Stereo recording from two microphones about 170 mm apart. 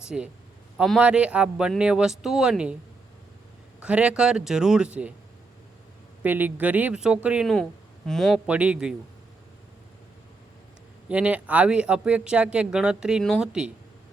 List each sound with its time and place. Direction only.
0.0 s speech: 5° right (ahead or behind)
3.8 s speech: 5° right (ahead or behind)
6.2 s speech: 10° right (ahead or behind)
11.1 s speech: 10° right (ahead or behind)